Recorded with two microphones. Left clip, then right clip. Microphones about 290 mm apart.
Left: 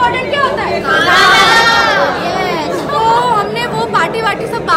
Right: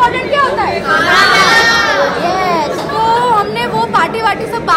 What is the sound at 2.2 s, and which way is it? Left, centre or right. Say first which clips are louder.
Chatter: right 3 dB; centre.